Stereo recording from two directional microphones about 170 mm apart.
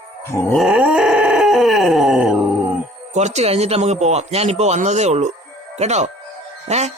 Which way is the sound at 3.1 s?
40° right (ahead or behind).